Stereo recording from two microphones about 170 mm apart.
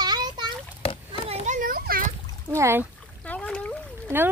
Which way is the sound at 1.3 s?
45° right (ahead or behind).